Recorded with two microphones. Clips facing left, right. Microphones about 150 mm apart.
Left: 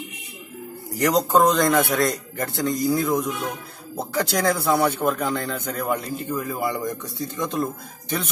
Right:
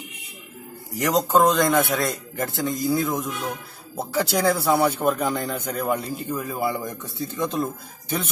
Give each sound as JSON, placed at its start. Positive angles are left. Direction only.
{"t": 0.9, "sound": "speech", "side_deg": 0}